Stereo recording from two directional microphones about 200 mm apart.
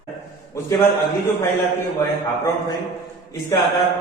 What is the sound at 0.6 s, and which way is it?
Speech, 15° left (ahead or behind).